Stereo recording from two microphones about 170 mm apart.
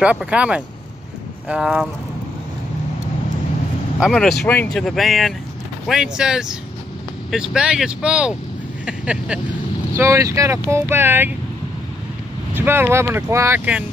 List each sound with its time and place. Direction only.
0.0 s speech: 5° right (ahead or behind)
4.0 s speech: centre (ahead or behind)
8.8 s vehicle: 5° right (ahead or behind)
9.9 s speech: 15° right (ahead or behind)
12.5 s speech: 15° right (ahead or behind)